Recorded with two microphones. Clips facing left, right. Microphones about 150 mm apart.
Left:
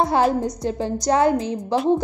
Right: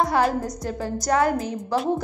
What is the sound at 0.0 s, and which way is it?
A woman's voice, 25° left (ahead or behind).